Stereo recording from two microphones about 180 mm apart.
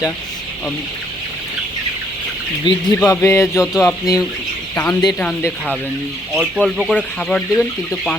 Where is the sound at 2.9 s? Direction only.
15° left (ahead or behind).